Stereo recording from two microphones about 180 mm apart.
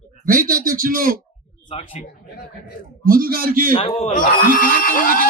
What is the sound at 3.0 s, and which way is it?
Speech, 55° right (ahead or behind).